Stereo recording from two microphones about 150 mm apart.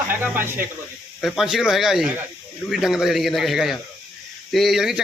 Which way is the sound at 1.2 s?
Centre (ahead or behind).